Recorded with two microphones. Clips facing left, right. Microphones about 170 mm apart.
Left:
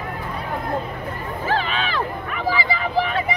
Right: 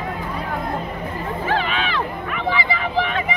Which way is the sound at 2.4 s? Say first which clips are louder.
Even; 35° left (ahead or behind).